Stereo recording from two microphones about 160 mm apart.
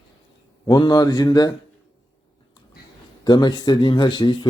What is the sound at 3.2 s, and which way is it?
A man's voice, 25° left (ahead or behind).